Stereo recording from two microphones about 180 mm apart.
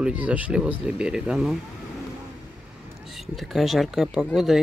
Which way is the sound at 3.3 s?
Centre (ahead or behind).